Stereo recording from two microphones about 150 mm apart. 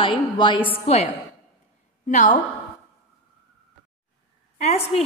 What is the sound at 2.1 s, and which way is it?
Speech, 55° left (ahead or behind).